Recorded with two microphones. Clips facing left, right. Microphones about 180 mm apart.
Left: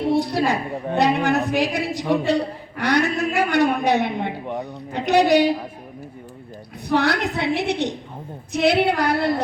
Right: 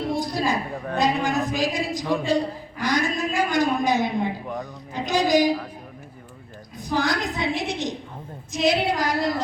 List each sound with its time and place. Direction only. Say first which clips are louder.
0.1 s a woman's voice: left 6 dB; 65° left (ahead or behind)
6.8 s a woman's voice: left 4 dB; 65° left (ahead or behind)